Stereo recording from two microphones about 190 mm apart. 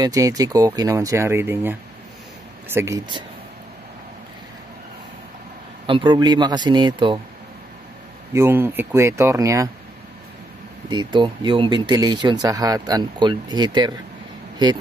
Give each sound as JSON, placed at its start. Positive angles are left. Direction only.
{"t": 0.0, "sound": "speech", "side_deg": -20}
{"t": 5.9, "sound": "speech", "side_deg": -25}
{"t": 8.3, "sound": "speech", "side_deg": -10}
{"t": 10.9, "sound": "speech", "side_deg": -25}